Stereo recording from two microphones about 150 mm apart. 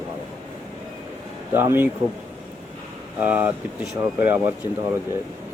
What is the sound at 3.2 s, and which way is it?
Speech, 10° right (ahead or behind).